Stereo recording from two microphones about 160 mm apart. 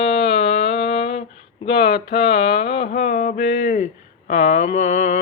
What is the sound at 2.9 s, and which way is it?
Mantra, 50° left (ahead or behind).